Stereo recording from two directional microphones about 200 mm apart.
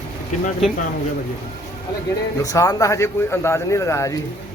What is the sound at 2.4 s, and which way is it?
Speech, 15° left (ahead or behind).